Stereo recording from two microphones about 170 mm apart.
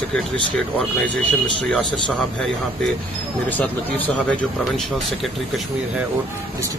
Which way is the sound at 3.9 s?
10° left (ahead or behind).